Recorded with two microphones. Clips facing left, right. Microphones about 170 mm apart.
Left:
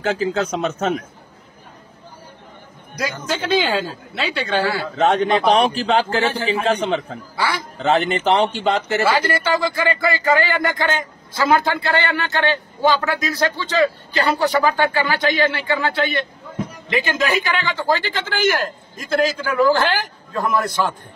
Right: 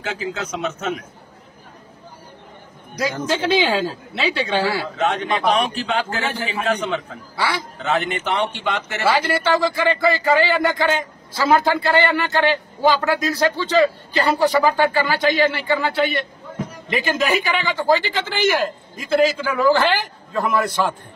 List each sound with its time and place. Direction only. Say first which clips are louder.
0.0 s a man's voice: left 7 dB; 40° left (ahead or behind)
3.0 s a man's voice: right 3 dB; centre (ahead or behind)
4.9 s a man's voice: left 5 dB; 35° left (ahead or behind)
7.3 s a man's voice: even; 5° right (ahead or behind)
7.8 s a man's voice: left 5 dB; 30° left (ahead or behind)
9.0 s a man's voice: right 3 dB; centre (ahead or behind)
16.9 s a man's voice: even; 5° right (ahead or behind)